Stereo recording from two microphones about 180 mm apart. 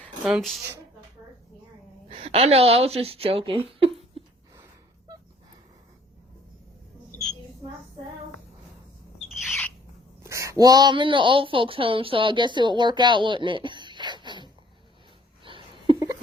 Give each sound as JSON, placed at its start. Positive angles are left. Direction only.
{"t": 0.3, "sound": "speech", "side_deg": 0}
{"t": 2.0, "sound": "a woman's voice", "side_deg": -35}
{"t": 4.2, "sound": "a sound", "side_deg": -30}
{"t": 9.3, "sound": "bird", "side_deg": 0}
{"t": 10.2, "sound": "speech", "side_deg": -15}
{"t": 15.4, "sound": "a sound", "side_deg": -30}